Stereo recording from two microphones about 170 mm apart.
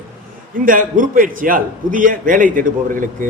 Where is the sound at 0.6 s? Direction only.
55° right (ahead or behind).